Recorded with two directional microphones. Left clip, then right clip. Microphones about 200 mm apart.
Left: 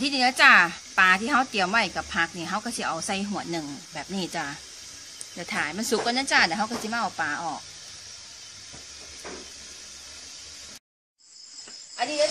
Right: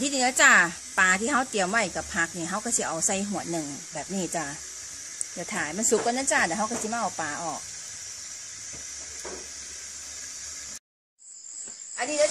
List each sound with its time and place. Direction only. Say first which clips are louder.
0.0 s speech: left 2 dB; 35° right (ahead or behind)